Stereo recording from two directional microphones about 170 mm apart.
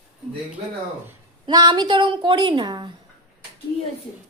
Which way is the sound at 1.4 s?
25° right (ahead or behind).